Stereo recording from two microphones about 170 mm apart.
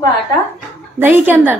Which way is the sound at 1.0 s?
10° right (ahead or behind).